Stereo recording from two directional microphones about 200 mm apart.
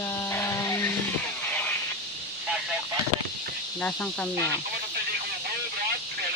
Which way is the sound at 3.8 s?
5° left (ahead or behind).